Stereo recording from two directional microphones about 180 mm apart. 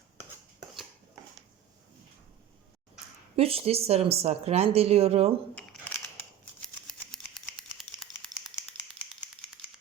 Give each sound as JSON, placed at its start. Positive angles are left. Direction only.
{"t": 3.3, "sound": "speech", "side_deg": -35}
{"t": 6.6, "sound": "rattle", "side_deg": 0}